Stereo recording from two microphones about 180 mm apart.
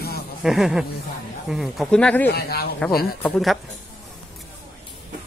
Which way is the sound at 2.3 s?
60° left (ahead or behind).